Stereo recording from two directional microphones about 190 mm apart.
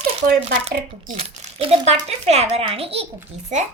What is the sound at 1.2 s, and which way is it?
A woman's voice, 30° right (ahead or behind).